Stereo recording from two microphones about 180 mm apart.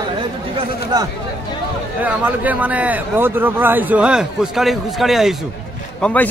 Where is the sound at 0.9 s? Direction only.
20° right (ahead or behind).